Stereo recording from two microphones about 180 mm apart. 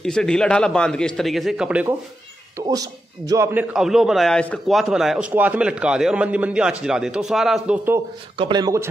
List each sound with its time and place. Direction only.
0.0 s a man's voice: 5° left (ahead or behind)
2.5 s speech: 20° right (ahead or behind)
3.7 s a man's voice: centre (ahead or behind)
8.4 s speech: 25° right (ahead or behind)